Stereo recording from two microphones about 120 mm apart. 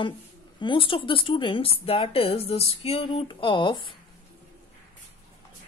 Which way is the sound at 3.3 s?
45° left (ahead or behind).